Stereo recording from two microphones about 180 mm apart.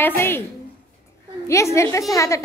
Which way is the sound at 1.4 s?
15° left (ahead or behind).